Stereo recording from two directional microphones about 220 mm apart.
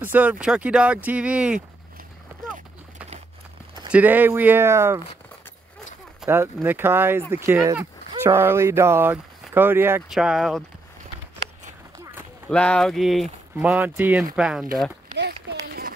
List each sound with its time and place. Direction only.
0.0 s speech: 5° right (ahead or behind)
3.9 s speech: 10° right (ahead or behind)
6.2 s speech: 10° right (ahead or behind)
12.4 s speech: 5° left (ahead or behind)
15.1 s a sound: 50° right (ahead or behind)